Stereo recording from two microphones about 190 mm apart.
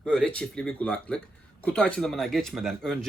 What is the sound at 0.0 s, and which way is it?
Speech, 5° left (ahead or behind).